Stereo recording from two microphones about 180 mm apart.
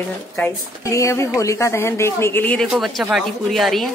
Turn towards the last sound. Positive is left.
turn(degrees=0)  # may be behind; listen again after turning